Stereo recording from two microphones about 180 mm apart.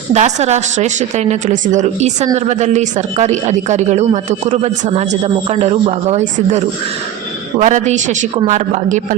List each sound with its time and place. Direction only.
0.1 s a woman's voice: 40° right (ahead or behind)